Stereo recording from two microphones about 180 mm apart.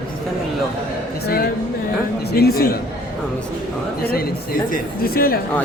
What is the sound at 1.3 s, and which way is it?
A man's voice, 60° left (ahead or behind).